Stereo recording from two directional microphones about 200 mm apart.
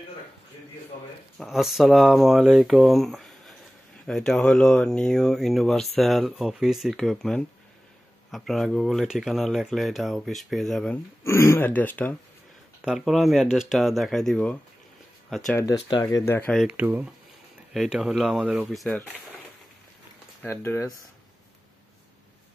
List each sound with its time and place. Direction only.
0.9 s a man's voice: 45° left (ahead or behind)
1.4 s speech: centre (ahead or behind)
11.2 s speech: 15° left (ahead or behind)
15.6 s speech: 20° left (ahead or behind)
16.5 s speech: 5° right (ahead or behind)
20.4 s speech: 10° left (ahead or behind)